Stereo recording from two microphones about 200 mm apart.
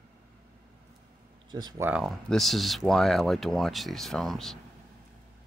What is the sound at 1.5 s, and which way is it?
Speech, 20° right (ahead or behind).